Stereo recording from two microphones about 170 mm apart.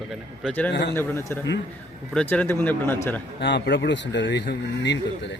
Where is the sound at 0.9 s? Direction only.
15° left (ahead or behind).